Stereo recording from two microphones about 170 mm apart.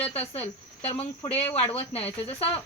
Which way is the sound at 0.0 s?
35° left (ahead or behind).